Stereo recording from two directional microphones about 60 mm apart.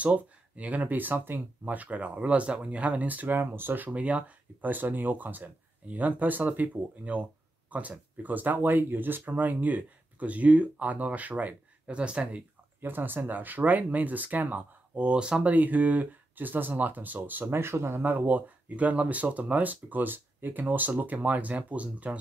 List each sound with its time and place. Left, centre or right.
0.0 s speech: right
12.8 s speech: right; by 15.4 s centre
15.4 s speech: right